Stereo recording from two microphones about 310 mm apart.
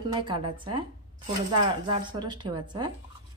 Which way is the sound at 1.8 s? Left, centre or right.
Centre.